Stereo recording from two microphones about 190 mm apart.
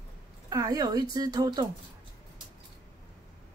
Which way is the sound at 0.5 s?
20° right (ahead or behind).